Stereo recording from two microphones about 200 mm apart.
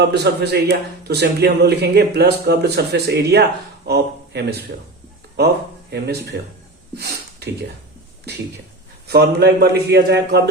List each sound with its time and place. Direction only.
0.1 s speech: 55° right (ahead or behind)
5.9 s speech: 55° right (ahead or behind)
6.9 s a sound: 55° right (ahead or behind)
9.0 s speech: 55° right (ahead or behind)